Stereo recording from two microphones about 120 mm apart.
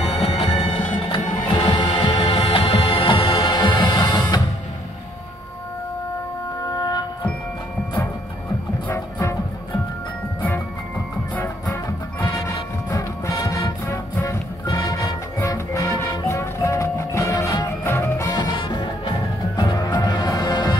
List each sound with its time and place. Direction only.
0.0 s music: 60° left (ahead or behind)
0.7 s music: 50° left (ahead or behind)
6.8 s music: 35° left (ahead or behind)
8.8 s music: 25° left (ahead or behind)
11.3 s music: 15° left (ahead or behind)
12.9 s music: 30° left (ahead or behind)
18.3 s music: 40° left (ahead or behind)